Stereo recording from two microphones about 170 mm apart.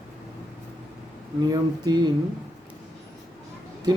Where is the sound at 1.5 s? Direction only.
25° right (ahead or behind).